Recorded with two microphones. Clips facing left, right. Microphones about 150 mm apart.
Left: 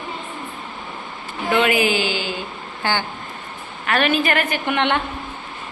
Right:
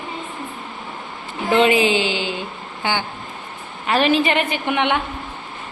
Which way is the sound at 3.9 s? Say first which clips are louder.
Right 2 dB; 25° right (ahead or behind).